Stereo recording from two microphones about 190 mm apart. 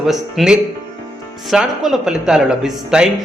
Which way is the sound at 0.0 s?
Centre (ahead or behind).